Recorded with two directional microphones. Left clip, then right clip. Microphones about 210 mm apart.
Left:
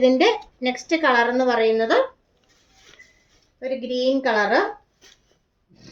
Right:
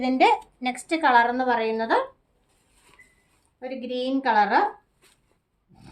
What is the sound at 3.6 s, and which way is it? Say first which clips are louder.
A woman's voice: left 6 dB; 20° right (ahead or behind).